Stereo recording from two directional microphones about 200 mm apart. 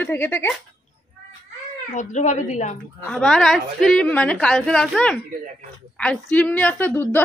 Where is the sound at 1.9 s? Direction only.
35° left (ahead or behind).